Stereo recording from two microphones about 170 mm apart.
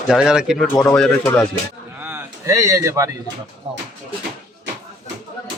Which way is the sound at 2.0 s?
15° right (ahead or behind).